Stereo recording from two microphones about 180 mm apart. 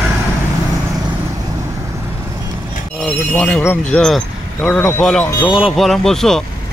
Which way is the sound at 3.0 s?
5° left (ahead or behind).